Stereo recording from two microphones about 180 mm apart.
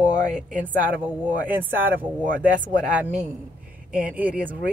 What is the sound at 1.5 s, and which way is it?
Speech, 10° right (ahead or behind).